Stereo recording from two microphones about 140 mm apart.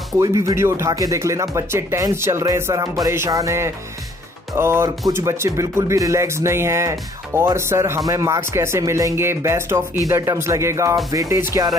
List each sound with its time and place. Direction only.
0.2 s speech: 25° right (ahead or behind)